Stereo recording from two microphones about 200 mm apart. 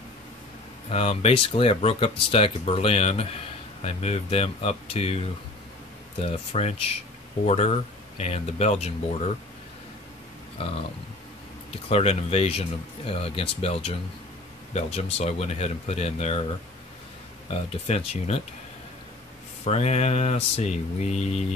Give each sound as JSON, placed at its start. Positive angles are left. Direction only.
{"t": 0.8, "sound": "speech", "side_deg": 30}
{"t": 6.2, "sound": "speech", "side_deg": 30}
{"t": 11.7, "sound": "speech", "side_deg": 30}
{"t": 17.5, "sound": "speech", "side_deg": 30}
{"t": 19.6, "sound": "speech", "side_deg": 30}